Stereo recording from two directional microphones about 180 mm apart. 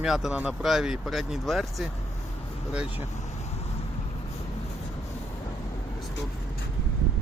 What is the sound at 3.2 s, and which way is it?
Vehicle, 40° left (ahead or behind).